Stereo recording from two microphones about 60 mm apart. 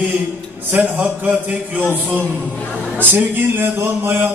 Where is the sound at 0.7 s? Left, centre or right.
Right.